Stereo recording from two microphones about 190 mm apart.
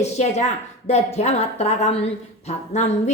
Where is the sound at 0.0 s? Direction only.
35° left (ahead or behind).